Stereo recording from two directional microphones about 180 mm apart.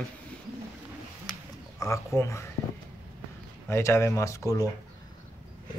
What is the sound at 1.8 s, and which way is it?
Speech, 15° left (ahead or behind).